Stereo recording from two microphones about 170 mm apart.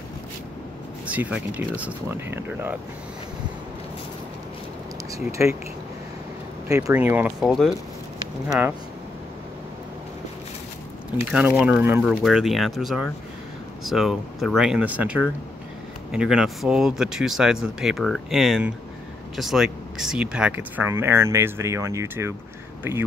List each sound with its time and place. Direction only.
1.0 s speech: 10° right (ahead or behind)
5.1 s speech: 15° right (ahead or behind)
6.7 s speech: 20° right (ahead or behind)
7.4 s speech: centre (ahead or behind)
11.1 s speech: 10° right (ahead or behind)